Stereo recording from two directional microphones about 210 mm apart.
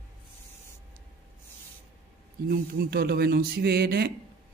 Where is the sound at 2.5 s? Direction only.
45° right (ahead or behind).